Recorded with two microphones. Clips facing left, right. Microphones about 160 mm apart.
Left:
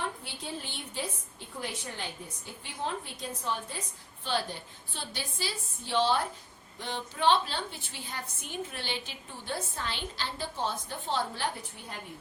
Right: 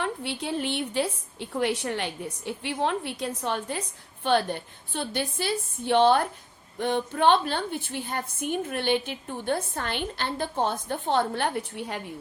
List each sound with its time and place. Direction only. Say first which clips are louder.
0.0 s a woman's voice: right 7 dB; 70° right (ahead or behind)